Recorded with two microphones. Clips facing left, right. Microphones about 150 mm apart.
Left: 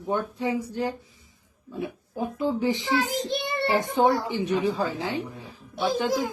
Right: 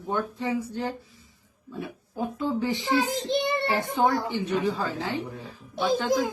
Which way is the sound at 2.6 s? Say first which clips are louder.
Left 2 dB; 15° left (ahead or behind).